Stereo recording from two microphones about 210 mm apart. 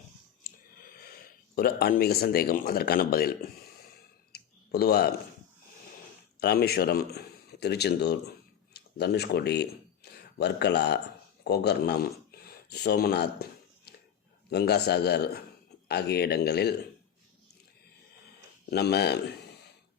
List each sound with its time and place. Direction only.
0.4 s a sound: 45° left (ahead or behind)
1.5 s speech: 45° left (ahead or behind)
4.3 s clicking: 50° left (ahead or behind)
6.4 s a man's voice: 50° left (ahead or behind)
12.3 s a sound: 50° left (ahead or behind)
14.5 s speech: 50° left (ahead or behind)
18.7 s speech: 50° left (ahead or behind)